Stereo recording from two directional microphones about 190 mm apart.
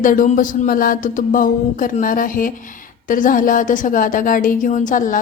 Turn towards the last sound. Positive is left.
turn(degrees=45)  # may be behind; listen again after turning